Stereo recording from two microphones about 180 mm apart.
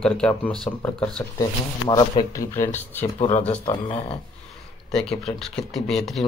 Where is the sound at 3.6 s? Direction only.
30° left (ahead or behind).